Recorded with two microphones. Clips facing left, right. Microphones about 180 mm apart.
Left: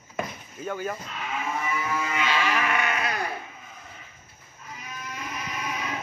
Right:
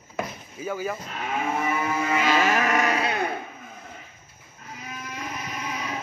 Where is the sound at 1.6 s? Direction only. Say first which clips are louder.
Right 4 dB; 40° right (ahead or behind); by 3.3 s 25° right (ahead or behind).